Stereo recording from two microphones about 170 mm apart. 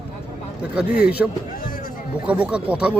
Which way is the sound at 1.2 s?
5° right (ahead or behind).